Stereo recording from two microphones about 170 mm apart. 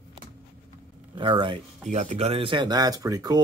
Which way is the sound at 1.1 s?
30° right (ahead or behind).